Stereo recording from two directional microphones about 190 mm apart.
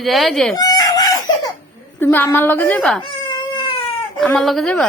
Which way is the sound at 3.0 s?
25° left (ahead or behind).